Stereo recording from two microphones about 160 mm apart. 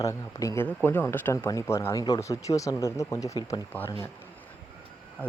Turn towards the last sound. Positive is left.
turn(degrees=10)  # may be behind; listen again after turning